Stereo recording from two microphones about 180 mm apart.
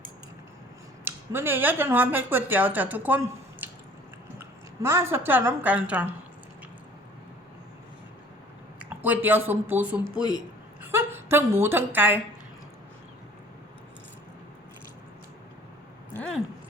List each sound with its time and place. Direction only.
1.0 s a woman's voice: 15° right (ahead or behind)
8.8 s a woman's voice: 10° right (ahead or behind)
16.1 s a sound: 5° left (ahead or behind)